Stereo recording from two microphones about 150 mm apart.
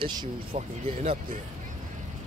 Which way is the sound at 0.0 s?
30° right (ahead or behind).